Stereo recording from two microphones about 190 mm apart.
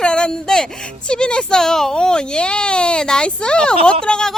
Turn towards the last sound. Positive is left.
turn(degrees=5)  # may be behind; listen again after turning